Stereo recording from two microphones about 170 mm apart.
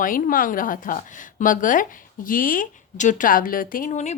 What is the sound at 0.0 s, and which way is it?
A woman's voice, 55° left (ahead or behind).